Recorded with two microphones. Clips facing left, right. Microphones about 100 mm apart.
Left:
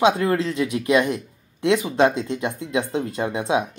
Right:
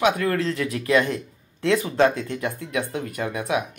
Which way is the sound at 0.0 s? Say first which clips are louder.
Left 3 dB; 20° left (ahead or behind).